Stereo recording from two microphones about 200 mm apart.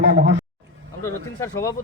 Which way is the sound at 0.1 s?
65° right (ahead or behind).